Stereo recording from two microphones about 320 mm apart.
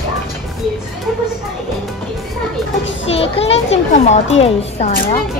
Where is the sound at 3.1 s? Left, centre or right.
Centre.